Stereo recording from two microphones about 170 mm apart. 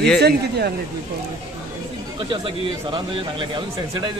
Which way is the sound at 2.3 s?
30° right (ahead or behind).